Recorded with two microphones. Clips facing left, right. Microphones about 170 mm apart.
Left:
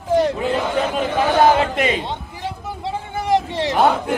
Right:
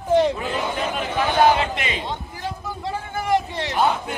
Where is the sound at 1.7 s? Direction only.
45° left (ahead or behind).